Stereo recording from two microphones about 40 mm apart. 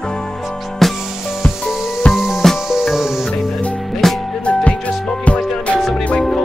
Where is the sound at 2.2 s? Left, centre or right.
Centre.